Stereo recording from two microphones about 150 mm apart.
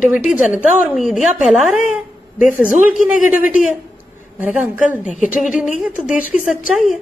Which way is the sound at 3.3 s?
10° right (ahead or behind).